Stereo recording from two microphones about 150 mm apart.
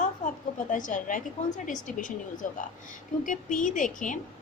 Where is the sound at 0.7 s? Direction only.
60° left (ahead or behind).